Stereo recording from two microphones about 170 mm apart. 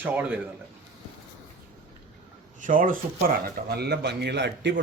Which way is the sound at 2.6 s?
50° right (ahead or behind).